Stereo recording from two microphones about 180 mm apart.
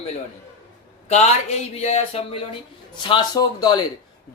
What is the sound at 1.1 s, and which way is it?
Speech, 40° left (ahead or behind).